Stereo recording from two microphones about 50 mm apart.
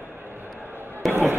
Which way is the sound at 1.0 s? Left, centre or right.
Centre.